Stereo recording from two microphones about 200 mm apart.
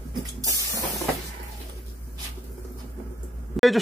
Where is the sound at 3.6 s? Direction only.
Centre (ahead or behind).